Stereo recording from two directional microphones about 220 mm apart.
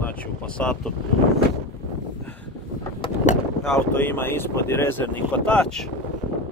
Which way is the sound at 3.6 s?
10° left (ahead or behind).